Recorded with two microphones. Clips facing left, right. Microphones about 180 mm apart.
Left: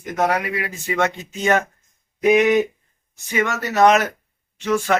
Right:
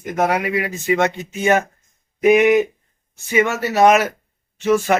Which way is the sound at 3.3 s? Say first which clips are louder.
Right 3 dB; 15° right (ahead or behind).